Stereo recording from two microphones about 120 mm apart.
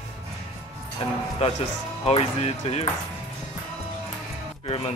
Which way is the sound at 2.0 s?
60° left (ahead or behind).